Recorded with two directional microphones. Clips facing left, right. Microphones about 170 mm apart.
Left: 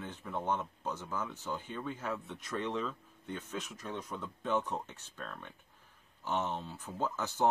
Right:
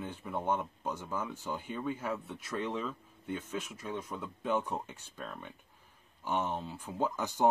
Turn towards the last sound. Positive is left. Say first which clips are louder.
# right 2 dB
turn(degrees=-15)  # may be behind; listen again after turning